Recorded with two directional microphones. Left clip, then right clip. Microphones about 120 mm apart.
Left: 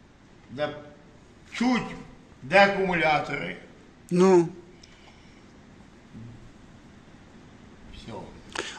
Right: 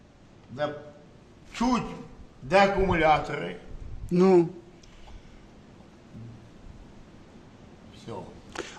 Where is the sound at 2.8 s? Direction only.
25° right (ahead or behind).